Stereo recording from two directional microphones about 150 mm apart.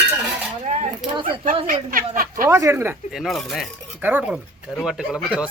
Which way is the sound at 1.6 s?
65° right (ahead or behind).